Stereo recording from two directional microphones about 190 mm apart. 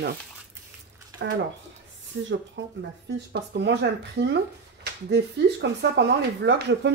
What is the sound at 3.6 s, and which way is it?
Speech, 60° right (ahead or behind).